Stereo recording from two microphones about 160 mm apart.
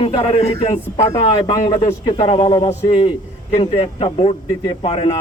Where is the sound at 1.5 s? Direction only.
25° left (ahead or behind).